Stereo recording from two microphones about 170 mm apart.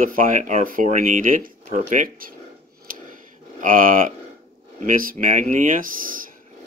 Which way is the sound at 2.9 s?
55° right (ahead or behind).